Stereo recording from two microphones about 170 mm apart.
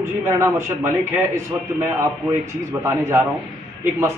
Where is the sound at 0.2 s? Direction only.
15° right (ahead or behind).